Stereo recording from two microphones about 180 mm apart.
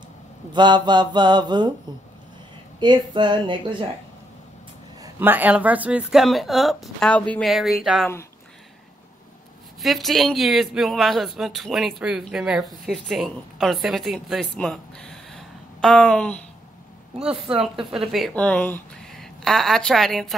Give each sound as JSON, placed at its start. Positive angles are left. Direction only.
{"t": 0.5, "sound": "mantra", "side_deg": -25}
{"t": 2.8, "sound": "mantra", "side_deg": -25}
{"t": 5.0, "sound": "speech", "side_deg": -10}
{"t": 9.8, "sound": "speech", "side_deg": 0}
{"t": 17.6, "sound": "a woman's voice", "side_deg": 0}